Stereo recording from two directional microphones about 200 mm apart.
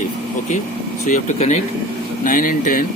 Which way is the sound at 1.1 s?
40° left (ahead or behind).